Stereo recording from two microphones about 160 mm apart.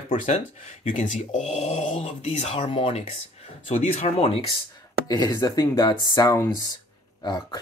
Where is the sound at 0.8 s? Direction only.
50° left (ahead or behind).